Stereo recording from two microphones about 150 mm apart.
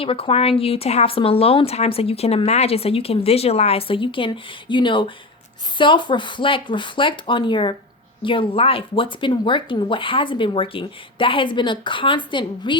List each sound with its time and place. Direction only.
0.0 s speech: 40° left (ahead or behind)